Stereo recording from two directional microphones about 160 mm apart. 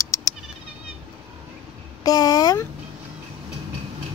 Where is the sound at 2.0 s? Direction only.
25° left (ahead or behind).